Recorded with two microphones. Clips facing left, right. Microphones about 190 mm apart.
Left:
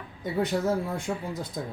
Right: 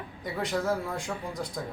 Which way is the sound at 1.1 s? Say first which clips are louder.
Left 4 dB; 20° left (ahead or behind).